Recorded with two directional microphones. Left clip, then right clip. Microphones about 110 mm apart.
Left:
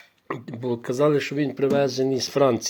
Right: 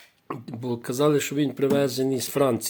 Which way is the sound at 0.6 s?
15° right (ahead or behind).